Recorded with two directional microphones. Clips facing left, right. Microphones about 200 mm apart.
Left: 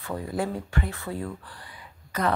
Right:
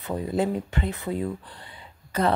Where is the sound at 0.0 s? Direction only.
20° right (ahead or behind).